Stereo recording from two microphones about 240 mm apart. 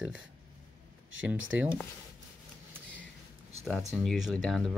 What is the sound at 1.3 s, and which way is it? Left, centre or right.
Speech, right.